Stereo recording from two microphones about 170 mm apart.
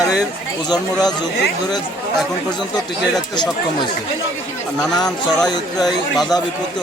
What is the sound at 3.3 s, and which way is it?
Speech, 25° left (ahead or behind).